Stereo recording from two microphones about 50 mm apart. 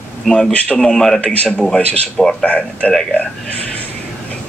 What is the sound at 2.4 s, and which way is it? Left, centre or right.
Speech, left.